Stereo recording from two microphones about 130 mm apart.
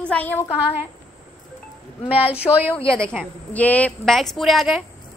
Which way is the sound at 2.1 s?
45° left (ahead or behind).